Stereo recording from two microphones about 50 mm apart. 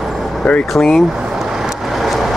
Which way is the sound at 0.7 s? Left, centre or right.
Centre.